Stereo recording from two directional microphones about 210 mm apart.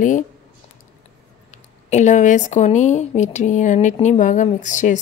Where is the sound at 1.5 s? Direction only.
35° left (ahead or behind).